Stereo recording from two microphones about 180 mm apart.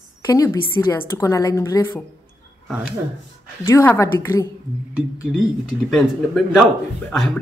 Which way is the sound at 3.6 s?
15° left (ahead or behind).